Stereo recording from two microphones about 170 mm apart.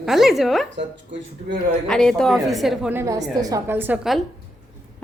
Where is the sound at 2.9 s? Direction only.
20° right (ahead or behind).